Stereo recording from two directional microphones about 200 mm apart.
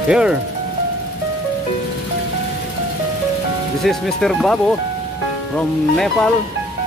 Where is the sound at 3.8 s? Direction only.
Centre (ahead or behind).